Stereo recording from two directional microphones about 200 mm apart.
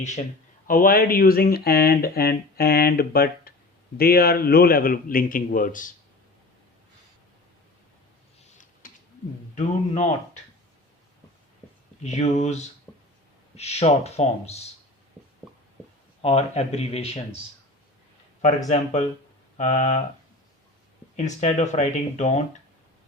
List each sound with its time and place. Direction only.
0.0 s speech: 35° left (ahead or behind)
9.6 s speech: 35° left (ahead or behind)
12.0 s speech: 35° left (ahead or behind)
12.9 s a sound: 5° left (ahead or behind)
13.6 s speech: 30° left (ahead or behind)
16.2 s speech: 30° left (ahead or behind)
19.5 s speech: 35° left (ahead or behind)
21.2 s speech: 35° left (ahead or behind)